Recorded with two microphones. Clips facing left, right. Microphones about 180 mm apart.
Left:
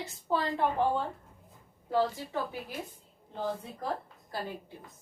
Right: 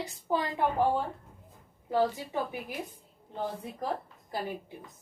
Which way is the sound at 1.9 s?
15° right (ahead or behind).